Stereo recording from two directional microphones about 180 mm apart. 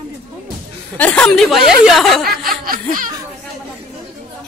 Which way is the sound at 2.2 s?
55° right (ahead or behind).